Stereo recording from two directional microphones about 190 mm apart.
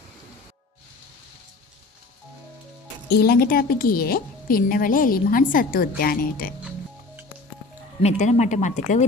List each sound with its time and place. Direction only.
3.1 s a woman's voice: 55° left (ahead or behind)
8.0 s speech: 35° left (ahead or behind)